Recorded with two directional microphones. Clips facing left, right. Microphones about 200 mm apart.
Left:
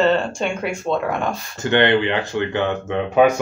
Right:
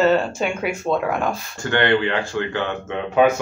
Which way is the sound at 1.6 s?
20° left (ahead or behind).